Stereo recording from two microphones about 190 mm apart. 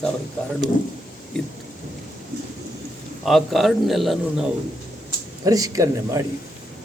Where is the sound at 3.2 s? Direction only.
Centre (ahead or behind).